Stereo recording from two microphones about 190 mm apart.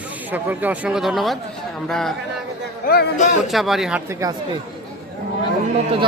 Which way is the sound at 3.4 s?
Centre (ahead or behind).